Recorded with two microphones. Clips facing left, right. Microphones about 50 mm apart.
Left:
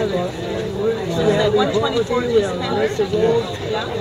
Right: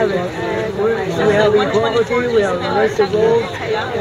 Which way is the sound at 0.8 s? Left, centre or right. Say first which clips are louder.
Right 3 dB; right.